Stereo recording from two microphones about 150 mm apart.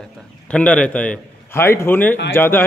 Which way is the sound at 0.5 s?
5° left (ahead or behind).